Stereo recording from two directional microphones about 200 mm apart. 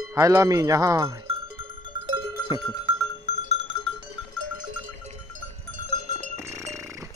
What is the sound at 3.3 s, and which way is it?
Bell, 35° left (ahead or behind).